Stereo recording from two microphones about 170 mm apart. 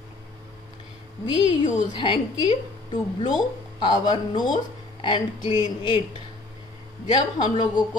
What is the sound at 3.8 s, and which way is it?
A woman's voice, 25° left (ahead or behind).